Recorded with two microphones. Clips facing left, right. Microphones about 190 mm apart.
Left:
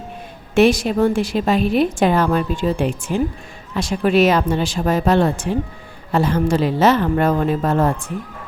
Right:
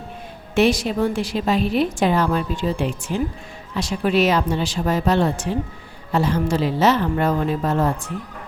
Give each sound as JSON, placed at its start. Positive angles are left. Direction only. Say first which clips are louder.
{"t": 0.5, "sound": "a woman's voice", "louder": "left 4 dB", "side_deg": 50}